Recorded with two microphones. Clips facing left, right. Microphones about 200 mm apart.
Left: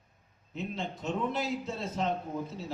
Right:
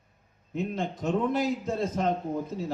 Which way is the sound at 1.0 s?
50° right (ahead or behind).